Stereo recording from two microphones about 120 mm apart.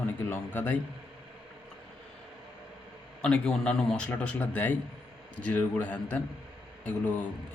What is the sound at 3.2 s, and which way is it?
Speech, 10° left (ahead or behind).